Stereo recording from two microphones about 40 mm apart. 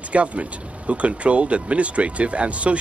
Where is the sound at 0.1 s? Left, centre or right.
Right.